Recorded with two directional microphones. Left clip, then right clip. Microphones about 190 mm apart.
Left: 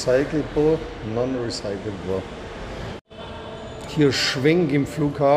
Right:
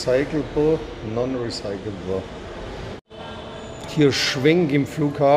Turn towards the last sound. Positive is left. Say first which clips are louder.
# right 1 dB
turn(degrees=-10)  # may be behind; listen again after turning